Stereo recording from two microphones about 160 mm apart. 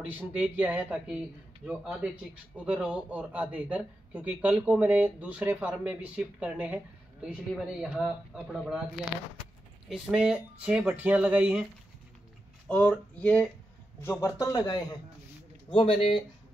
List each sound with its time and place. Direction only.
0.0 s speech: 10° right (ahead or behind)
9.8 s speech: 5° right (ahead or behind)
12.6 s a man's voice: 10° left (ahead or behind); by 16.2 s 35° left (ahead or behind)